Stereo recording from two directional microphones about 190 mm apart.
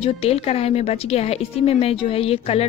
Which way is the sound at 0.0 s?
30° left (ahead or behind).